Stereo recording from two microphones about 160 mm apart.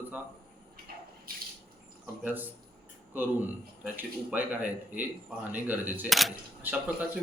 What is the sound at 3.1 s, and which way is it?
A man's voice, 10° right (ahead or behind).